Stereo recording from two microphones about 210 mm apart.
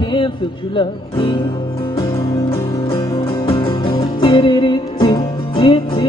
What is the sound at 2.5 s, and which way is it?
Music, 25° left (ahead or behind).